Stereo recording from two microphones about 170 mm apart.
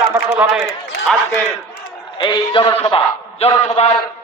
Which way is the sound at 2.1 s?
25° left (ahead or behind).